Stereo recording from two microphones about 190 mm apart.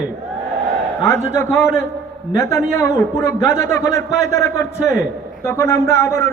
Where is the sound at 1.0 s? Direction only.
15° left (ahead or behind).